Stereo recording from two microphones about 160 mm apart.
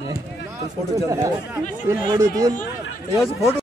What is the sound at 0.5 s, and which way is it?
Speech, 20° right (ahead or behind).